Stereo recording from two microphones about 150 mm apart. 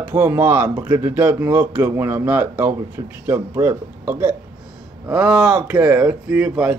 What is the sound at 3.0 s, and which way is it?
Speech, 30° right (ahead or behind).